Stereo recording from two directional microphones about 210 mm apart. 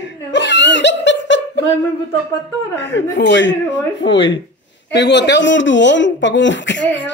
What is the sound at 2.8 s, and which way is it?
Speech, 55° left (ahead or behind).